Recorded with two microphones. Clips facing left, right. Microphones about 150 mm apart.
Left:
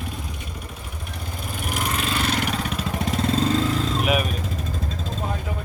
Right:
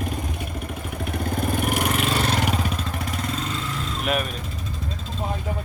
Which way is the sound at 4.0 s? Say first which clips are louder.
Even; 5° left (ahead or behind).